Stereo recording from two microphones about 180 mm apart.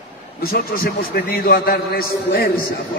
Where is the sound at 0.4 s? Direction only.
55° left (ahead or behind).